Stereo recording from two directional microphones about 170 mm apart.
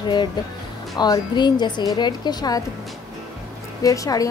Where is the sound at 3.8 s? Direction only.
20° left (ahead or behind).